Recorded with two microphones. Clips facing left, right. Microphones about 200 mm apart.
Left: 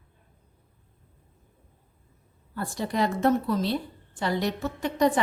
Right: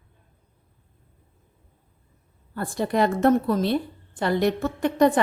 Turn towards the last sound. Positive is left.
turn(degrees=-55)  # may be behind; listen again after turning